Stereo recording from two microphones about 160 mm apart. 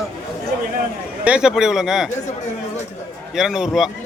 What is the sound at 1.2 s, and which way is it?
Speech, 5° right (ahead or behind).